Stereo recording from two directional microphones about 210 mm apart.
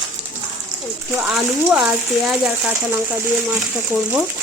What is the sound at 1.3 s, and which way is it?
Speech, 5° right (ahead or behind).